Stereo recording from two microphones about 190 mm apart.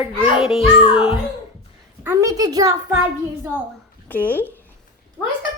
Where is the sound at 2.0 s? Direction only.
20° right (ahead or behind).